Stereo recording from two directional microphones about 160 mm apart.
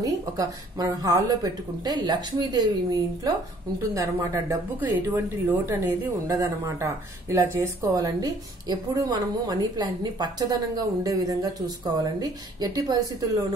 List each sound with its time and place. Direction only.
0.0 s a woman's voice: 20° right (ahead or behind)